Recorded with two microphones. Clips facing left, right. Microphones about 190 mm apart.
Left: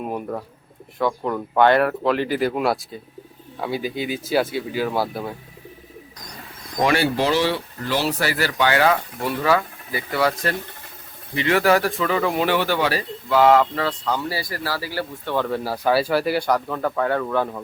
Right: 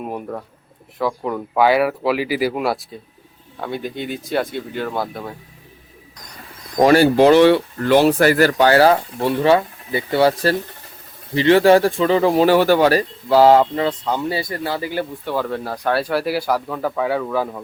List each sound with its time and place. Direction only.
0.0 s speech: centre (ahead or behind)
6.7 s speech: 40° right (ahead or behind)
13.2 s speech: 30° right (ahead or behind); by 15.4 s 10° right (ahead or behind)
15.4 s speech: 5° left (ahead or behind)